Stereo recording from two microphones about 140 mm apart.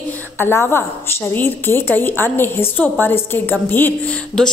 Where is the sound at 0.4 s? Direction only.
15° left (ahead or behind).